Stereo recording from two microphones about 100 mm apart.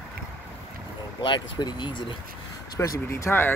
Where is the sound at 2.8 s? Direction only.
30° left (ahead or behind).